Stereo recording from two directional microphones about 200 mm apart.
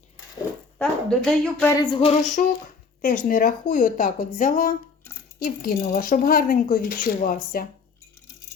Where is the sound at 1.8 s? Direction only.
25° left (ahead or behind).